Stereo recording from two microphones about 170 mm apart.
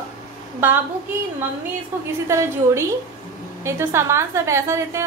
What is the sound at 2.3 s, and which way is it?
A woman's voice, 15° right (ahead or behind).